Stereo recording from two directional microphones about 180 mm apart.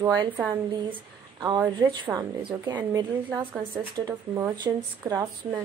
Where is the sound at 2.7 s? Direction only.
10° right (ahead or behind).